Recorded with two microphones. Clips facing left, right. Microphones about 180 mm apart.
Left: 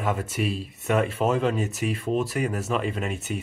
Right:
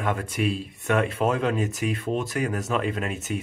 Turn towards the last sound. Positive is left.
turn(degrees=0)  # may be behind; listen again after turning